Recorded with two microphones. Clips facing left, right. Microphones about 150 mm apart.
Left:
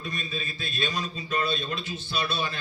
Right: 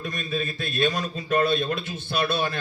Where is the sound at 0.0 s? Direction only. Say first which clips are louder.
Right 6 dB; 50° right (ahead or behind).